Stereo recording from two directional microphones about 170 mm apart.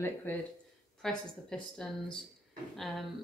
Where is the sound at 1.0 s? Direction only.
5° left (ahead or behind).